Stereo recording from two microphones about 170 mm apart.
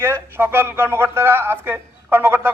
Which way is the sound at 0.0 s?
15° right (ahead or behind).